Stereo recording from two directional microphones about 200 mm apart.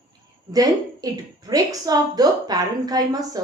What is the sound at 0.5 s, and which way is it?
A woman's voice, 20° right (ahead or behind).